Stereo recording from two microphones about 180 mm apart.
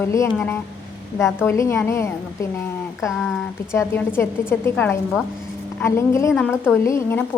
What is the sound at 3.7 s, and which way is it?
Speech, 10° left (ahead or behind).